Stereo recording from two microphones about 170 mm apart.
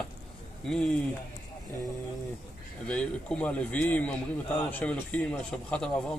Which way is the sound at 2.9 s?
5° left (ahead or behind).